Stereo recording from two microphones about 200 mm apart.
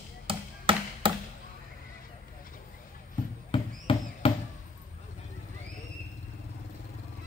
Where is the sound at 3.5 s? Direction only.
25° left (ahead or behind).